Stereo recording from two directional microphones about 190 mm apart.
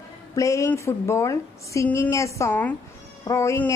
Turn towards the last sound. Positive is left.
turn(degrees=15)  # may be behind; listen again after turning